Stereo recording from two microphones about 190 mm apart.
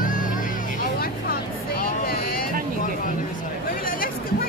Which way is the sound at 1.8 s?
50° left (ahead or behind).